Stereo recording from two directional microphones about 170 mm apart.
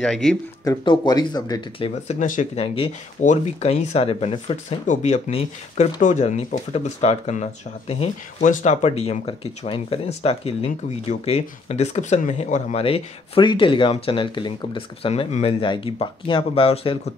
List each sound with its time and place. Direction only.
0.0 s speech: 5° left (ahead or behind)
0.7 s speech: 25° left (ahead or behind)
2.0 s speech: 50° left (ahead or behind)
2.6 s speech: 35° left (ahead or behind)